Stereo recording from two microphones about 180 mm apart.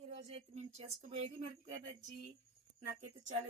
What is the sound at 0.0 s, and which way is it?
Speech, 35° right (ahead or behind).